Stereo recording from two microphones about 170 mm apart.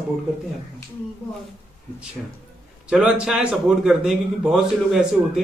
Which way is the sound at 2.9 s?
5° right (ahead or behind).